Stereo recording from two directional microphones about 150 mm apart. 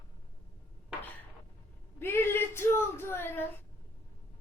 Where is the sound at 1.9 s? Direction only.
15° left (ahead or behind).